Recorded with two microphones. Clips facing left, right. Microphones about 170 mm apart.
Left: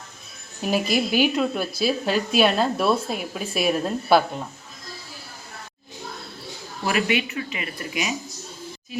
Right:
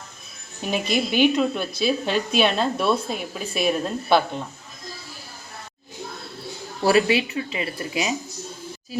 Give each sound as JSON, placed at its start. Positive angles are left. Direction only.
{"t": 0.6, "sound": "speech", "side_deg": 5}
{"t": 6.8, "sound": "speech", "side_deg": -30}